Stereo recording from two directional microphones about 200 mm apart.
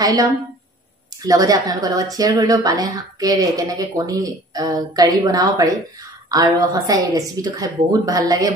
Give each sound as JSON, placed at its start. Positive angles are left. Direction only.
{"t": 0.0, "sound": "a woman's voice", "side_deg": -20}